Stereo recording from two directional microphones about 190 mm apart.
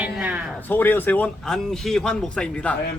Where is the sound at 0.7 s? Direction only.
10° left (ahead or behind).